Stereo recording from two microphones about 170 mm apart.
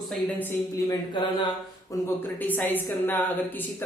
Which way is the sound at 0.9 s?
30° left (ahead or behind).